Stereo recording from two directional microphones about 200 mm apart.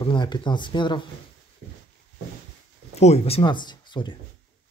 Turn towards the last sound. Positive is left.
turn(degrees=25)  # may be behind; listen again after turning